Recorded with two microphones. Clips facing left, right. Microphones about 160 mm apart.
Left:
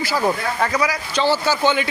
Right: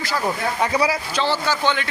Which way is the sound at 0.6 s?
15° right (ahead or behind).